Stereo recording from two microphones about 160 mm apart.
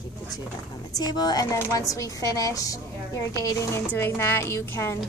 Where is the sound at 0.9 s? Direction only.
25° left (ahead or behind).